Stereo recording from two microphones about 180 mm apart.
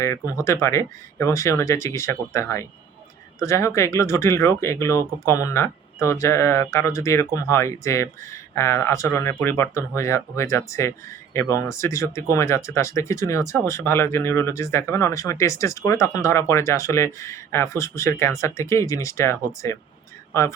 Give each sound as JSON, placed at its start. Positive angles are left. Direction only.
{"t": 0.0, "sound": "speech", "side_deg": 15}